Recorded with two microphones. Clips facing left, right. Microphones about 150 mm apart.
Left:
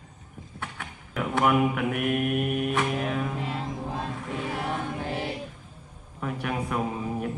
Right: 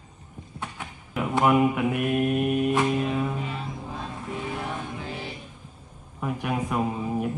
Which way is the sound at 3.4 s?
90° left.